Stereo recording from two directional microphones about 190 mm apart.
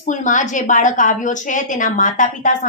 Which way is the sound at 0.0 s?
40° left (ahead or behind).